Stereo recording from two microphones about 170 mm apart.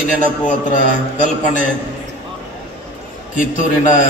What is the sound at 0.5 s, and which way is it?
Speech, 50° left (ahead or behind).